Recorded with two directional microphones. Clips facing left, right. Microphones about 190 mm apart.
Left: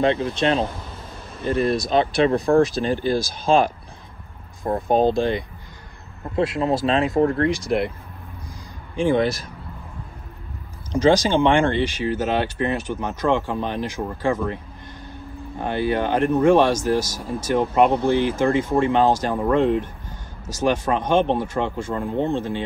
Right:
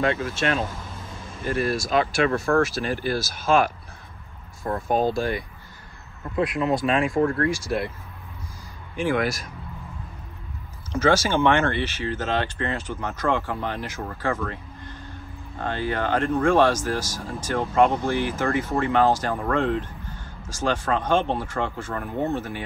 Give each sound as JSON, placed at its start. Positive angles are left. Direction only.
{"t": 0.0, "sound": "speech", "side_deg": 25}
{"t": 3.5, "sound": "speech", "side_deg": 30}
{"t": 4.9, "sound": "speech", "side_deg": 20}
{"t": 9.0, "sound": "speech", "side_deg": 25}
{"t": 10.9, "sound": "speech", "side_deg": 15}